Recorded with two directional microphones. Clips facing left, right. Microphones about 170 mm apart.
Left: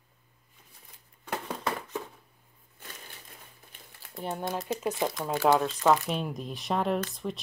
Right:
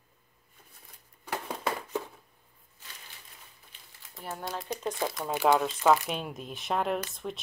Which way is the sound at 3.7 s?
50° left (ahead or behind).